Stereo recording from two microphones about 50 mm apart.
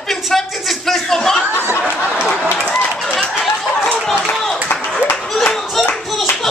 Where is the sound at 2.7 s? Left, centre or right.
Centre.